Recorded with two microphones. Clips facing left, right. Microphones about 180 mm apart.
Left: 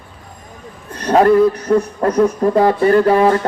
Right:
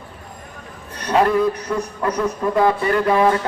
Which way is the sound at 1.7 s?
40° left (ahead or behind).